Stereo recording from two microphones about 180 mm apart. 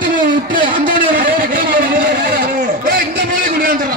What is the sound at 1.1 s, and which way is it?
Vehicle, 50° right (ahead or behind).